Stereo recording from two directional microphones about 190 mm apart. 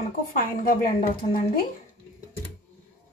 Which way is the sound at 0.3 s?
50° left (ahead or behind).